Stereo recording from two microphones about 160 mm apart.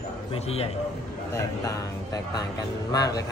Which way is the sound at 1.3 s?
20° left (ahead or behind).